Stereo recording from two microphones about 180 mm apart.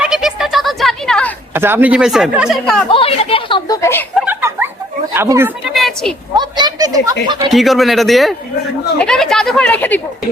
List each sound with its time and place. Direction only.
0.0 s a sound: 5° right (ahead or behind)
1.5 s speech: 10° right (ahead or behind)
2.9 s speech: 30° left (ahead or behind)
3.8 s speech: 15° left (ahead or behind)
4.3 s a sound: 10° right (ahead or behind)
5.1 s speech: 15° right (ahead or behind)
5.6 s speech: centre (ahead or behind)
6.3 s speech: 25° right (ahead or behind)
7.5 s speech: centre (ahead or behind)